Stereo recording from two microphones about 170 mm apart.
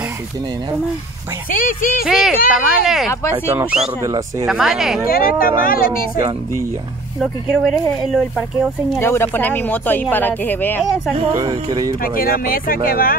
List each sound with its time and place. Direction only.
1.5 s speech: 55° left (ahead or behind)
2.0 s speech: 5° right (ahead or behind)
4.0 s speech: 20° right (ahead or behind)
4.5 s speech: 5° right (ahead or behind)
5.0 s speech: 60° left (ahead or behind)
7.2 s speech: 5° right (ahead or behind)
9.0 s speech: 15° left (ahead or behind)
11.1 s speech: 35° right (ahead or behind)
12.0 s speech: 60° left (ahead or behind)